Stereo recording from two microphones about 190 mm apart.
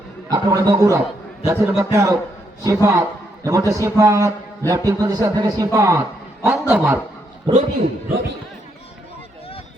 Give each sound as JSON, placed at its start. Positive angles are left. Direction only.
{"t": 0.3, "sound": "a man's voice", "side_deg": -20}
{"t": 7.5, "sound": "a man's voice", "side_deg": -30}